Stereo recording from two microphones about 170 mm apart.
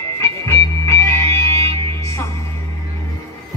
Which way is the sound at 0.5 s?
15° left (ahead or behind).